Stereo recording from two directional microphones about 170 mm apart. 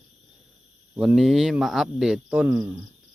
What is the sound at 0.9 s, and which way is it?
Speech, 5° right (ahead or behind).